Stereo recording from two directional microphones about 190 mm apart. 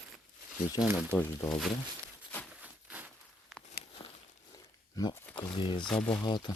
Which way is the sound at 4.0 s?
30° left (ahead or behind).